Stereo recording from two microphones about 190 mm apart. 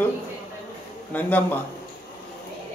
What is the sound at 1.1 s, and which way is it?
Speech, 10° left (ahead or behind).